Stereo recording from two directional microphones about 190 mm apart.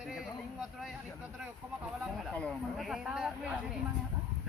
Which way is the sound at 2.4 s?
5° left (ahead or behind).